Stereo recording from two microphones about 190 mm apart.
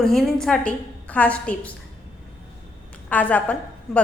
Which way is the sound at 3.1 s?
10° left (ahead or behind).